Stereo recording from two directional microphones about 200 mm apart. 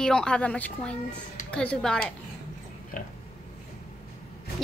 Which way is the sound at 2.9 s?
40° left (ahead or behind).